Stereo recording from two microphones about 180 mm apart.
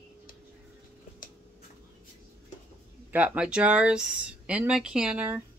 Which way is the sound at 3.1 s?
5° right (ahead or behind).